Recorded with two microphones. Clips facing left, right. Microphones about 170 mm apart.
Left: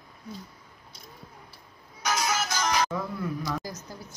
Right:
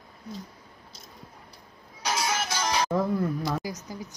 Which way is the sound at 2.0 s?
30° right (ahead or behind).